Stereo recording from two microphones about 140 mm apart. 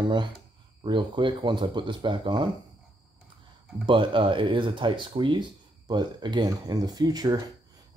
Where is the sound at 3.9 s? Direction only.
35° right (ahead or behind).